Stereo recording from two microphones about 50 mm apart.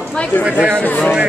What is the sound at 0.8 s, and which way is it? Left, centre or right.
Speech, left.